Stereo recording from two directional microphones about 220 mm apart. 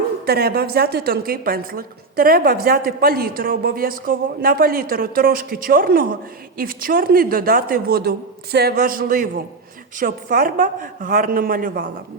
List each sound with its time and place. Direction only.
0.3 s a woman's voice: 45° right (ahead or behind)